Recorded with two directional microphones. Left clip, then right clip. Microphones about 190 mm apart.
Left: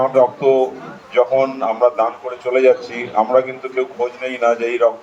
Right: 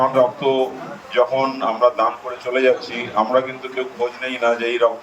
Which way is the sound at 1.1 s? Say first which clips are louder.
Left 3 dB; 20° left (ahead or behind).